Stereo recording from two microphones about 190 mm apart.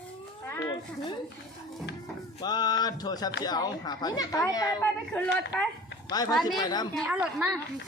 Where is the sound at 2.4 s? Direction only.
20° left (ahead or behind).